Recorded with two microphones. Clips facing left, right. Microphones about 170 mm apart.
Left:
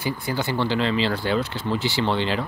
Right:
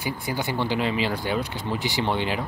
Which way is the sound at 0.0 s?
15° right (ahead or behind).